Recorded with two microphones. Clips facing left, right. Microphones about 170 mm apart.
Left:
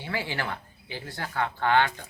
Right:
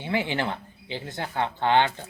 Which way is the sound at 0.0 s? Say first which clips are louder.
Right 5 dB; 20° right (ahead or behind).